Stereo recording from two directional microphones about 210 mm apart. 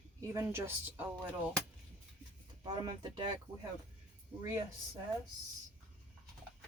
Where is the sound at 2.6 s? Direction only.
20° right (ahead or behind).